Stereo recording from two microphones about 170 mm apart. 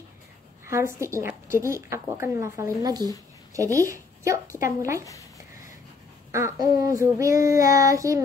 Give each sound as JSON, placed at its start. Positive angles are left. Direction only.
{"t": 0.7, "sound": "a woman's voice", "side_deg": -15}
{"t": 6.3, "sound": "child singing", "side_deg": -20}